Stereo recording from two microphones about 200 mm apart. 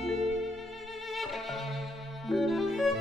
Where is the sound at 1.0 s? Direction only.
Centre (ahead or behind).